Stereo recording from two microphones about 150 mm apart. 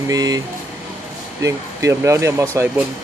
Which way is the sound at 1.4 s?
20° right (ahead or behind).